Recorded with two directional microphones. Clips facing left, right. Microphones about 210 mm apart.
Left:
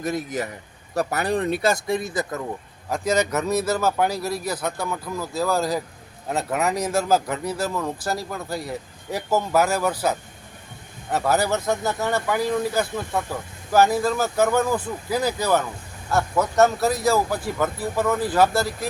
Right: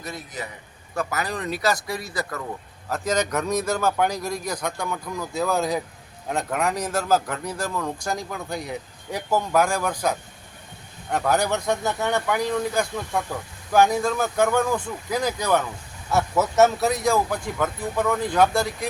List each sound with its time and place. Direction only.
0.9 s speech: 30° left (ahead or behind)
2.9 s speech: 10° left (ahead or behind)